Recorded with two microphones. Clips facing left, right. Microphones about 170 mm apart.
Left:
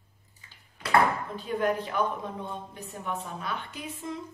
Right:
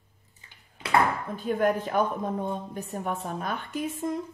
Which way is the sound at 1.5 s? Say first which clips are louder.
Right 3 dB; 50° right (ahead or behind).